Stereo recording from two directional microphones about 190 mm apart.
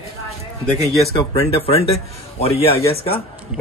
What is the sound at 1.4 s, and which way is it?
A man's voice, 30° left (ahead or behind).